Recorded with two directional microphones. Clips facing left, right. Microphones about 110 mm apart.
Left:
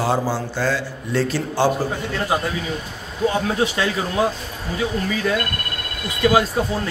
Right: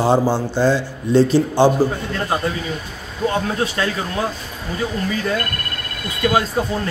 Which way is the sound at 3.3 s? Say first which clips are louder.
Even; 10° left (ahead or behind).